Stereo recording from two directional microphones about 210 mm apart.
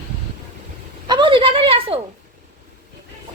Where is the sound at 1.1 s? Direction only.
20° right (ahead or behind).